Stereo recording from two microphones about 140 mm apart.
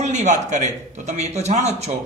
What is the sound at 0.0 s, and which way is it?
A man's voice, 60° right (ahead or behind).